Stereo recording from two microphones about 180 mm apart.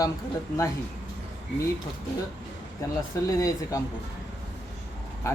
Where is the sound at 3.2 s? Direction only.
20° left (ahead or behind).